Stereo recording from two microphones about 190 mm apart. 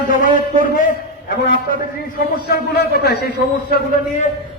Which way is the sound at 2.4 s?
55° left (ahead or behind).